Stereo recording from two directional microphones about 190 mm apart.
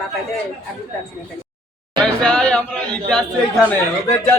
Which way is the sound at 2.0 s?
5° left (ahead or behind).